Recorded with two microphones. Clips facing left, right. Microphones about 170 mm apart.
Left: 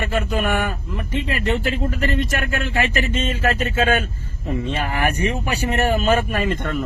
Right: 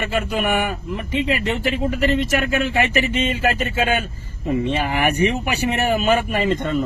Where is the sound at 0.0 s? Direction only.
15° right (ahead or behind).